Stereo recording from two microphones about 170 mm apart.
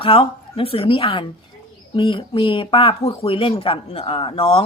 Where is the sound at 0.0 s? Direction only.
30° left (ahead or behind).